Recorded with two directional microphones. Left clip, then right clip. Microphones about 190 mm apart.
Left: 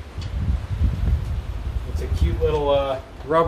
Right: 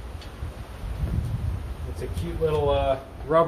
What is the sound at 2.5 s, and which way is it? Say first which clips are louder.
Speech: left 3 dB; 10° left (ahead or behind).